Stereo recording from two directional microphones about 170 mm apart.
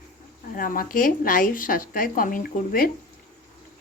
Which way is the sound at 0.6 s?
55° left (ahead or behind).